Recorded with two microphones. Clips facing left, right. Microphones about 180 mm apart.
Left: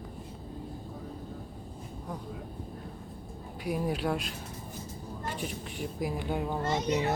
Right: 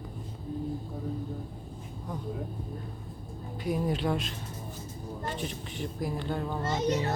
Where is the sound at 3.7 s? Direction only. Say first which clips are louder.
Right 1 dB; 5° left (ahead or behind).